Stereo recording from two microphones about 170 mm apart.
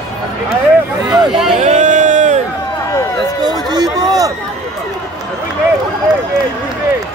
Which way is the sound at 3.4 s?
25° right (ahead or behind).